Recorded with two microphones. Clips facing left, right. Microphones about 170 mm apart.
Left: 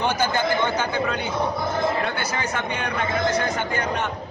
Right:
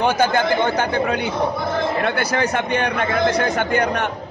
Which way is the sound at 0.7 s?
60° right (ahead or behind).